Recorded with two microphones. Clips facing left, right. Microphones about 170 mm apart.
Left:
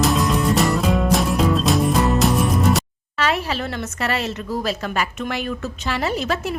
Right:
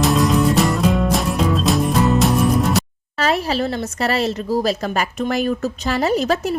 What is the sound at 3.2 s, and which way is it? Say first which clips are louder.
A woman's voice: right 3 dB; 40° right (ahead or behind).